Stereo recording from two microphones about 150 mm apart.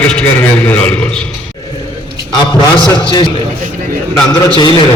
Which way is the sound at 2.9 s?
30° left (ahead or behind).